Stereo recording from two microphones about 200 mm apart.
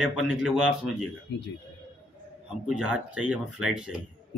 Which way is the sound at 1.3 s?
60° left (ahead or behind).